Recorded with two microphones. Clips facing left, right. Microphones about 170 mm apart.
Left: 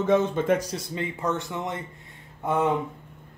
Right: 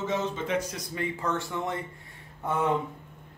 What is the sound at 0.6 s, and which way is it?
Speech, 35° left (ahead or behind).